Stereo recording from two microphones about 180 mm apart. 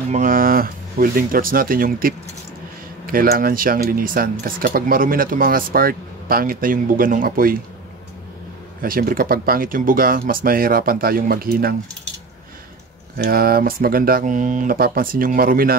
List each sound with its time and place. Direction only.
0.1 s speech: 50° right (ahead or behind)
8.8 s speech: 50° right (ahead or behind)
13.2 s speech: 55° right (ahead or behind)